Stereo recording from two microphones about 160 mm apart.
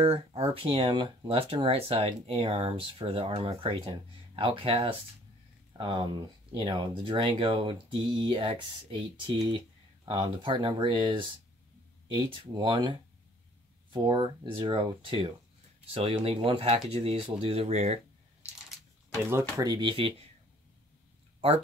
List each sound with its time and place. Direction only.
0.0 s speech: 40° right (ahead or behind)
10.0 s speech: 30° right (ahead or behind)
12.5 s speech: 30° right (ahead or behind)
13.9 s speech: 30° right (ahead or behind)
19.5 s speech: 25° right (ahead or behind)